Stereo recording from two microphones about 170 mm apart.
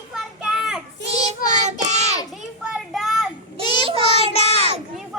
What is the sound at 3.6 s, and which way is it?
Child singing, 25° left (ahead or behind).